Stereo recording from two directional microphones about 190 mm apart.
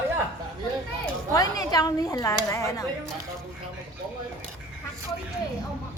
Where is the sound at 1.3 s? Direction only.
20° left (ahead or behind).